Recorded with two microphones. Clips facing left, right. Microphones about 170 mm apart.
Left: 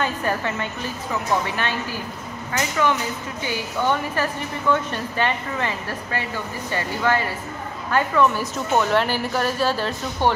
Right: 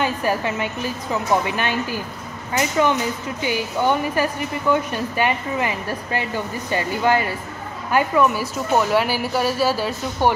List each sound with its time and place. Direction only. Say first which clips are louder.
0.0 s a woman's voice: right 2 dB; 10° right (ahead or behind)
2.5 s a woman's voice: right 3 dB; 20° right (ahead or behind)